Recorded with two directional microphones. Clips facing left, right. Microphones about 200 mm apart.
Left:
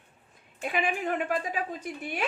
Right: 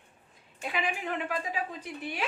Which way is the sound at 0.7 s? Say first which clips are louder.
Left 4 dB; 50° left (ahead or behind).